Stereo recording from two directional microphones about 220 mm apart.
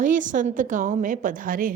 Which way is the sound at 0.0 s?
35° right (ahead or behind).